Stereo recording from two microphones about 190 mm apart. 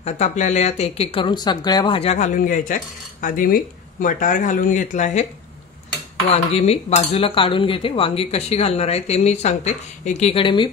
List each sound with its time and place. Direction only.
0.0 s speech: 40° left (ahead or behind)
6.3 s speech: 30° left (ahead or behind)